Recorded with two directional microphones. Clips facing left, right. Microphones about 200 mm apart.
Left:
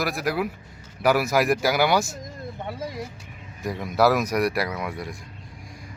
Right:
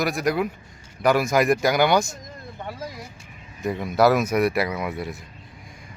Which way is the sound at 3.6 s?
Centre (ahead or behind).